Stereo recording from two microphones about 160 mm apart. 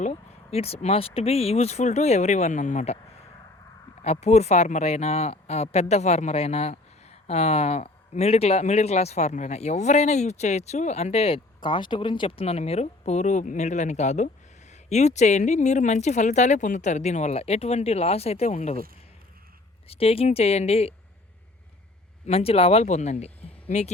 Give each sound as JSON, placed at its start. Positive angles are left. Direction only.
{"t": 0.0, "sound": "speech", "side_deg": 45}
{"t": 4.0, "sound": "speech", "side_deg": 40}
{"t": 19.9, "sound": "a woman's voice", "side_deg": 35}
{"t": 22.3, "sound": "speech", "side_deg": 40}